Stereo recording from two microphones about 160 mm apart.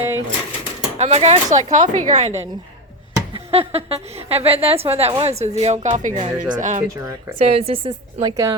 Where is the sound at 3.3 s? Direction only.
40° right (ahead or behind).